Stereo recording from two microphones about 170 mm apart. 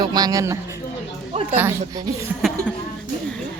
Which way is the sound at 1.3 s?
35° right (ahead or behind).